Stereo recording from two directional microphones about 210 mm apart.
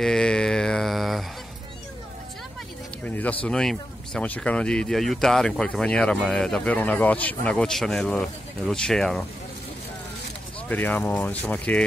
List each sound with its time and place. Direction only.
0.0 s mantra: 5° left (ahead or behind)
3.0 s a sound: 5° left (ahead or behind)
3.4 s speech: 5° left (ahead or behind)
10.7 s speech: 10° left (ahead or behind)